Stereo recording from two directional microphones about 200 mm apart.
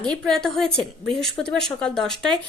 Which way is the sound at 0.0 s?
5° left (ahead or behind).